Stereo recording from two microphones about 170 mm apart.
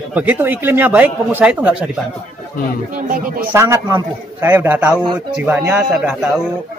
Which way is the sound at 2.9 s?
50° right (ahead or behind).